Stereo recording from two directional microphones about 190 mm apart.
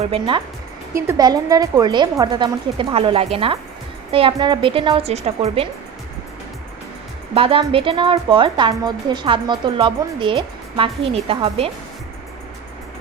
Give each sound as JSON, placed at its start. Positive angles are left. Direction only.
{"t": 0.0, "sound": "a woman's voice", "side_deg": -25}
{"t": 0.9, "sound": "a woman's voice", "side_deg": -15}
{"t": 7.3, "sound": "a woman's voice", "side_deg": -30}